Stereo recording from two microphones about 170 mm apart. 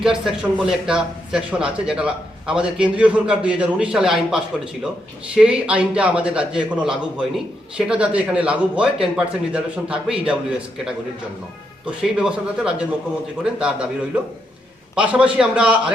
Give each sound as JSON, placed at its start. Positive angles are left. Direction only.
{"t": 0.0, "sound": "a man's voice", "side_deg": -5}
{"t": 12.0, "sound": "a man's voice", "side_deg": -5}